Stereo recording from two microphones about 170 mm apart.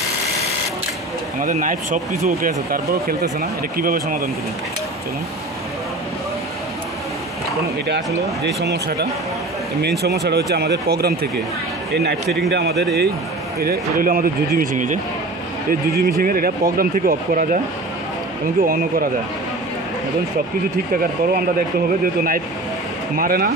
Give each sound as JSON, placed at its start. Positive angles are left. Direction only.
{"t": 1.4, "sound": "speech", "side_deg": -50}
{"t": 8.6, "sound": "speech", "side_deg": -80}
{"t": 12.4, "sound": "speech", "side_deg": -80}
{"t": 13.6, "sound": "speech", "side_deg": -60}
{"t": 18.6, "sound": "speech", "side_deg": -60}
{"t": 20.9, "sound": "speech", "side_deg": -60}
{"t": 23.1, "sound": "speech", "side_deg": -55}